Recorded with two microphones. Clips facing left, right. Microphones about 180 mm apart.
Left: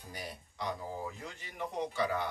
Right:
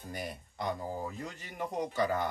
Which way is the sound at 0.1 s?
50° right (ahead or behind).